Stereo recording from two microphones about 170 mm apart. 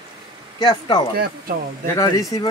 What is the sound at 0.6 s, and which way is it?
Speech, 25° left (ahead or behind).